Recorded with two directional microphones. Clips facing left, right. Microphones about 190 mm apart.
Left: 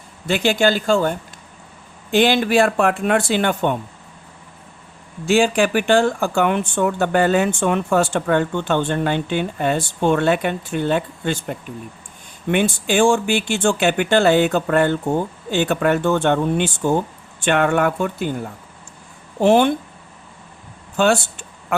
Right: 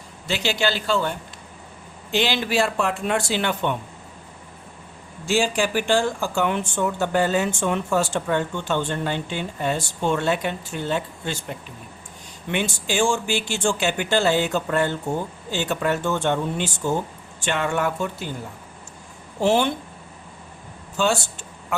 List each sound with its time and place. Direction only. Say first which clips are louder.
0.3 s speech: left 7 dB; 50° left (ahead or behind)
2.1 s speech: left 7 dB; 55° left (ahead or behind)
5.2 s speech: left 6 dB; 60° left (ahead or behind)
19.4 s speech: left 6 dB; 55° left (ahead or behind)
20.9 s speech: left 5 dB; 60° left (ahead or behind)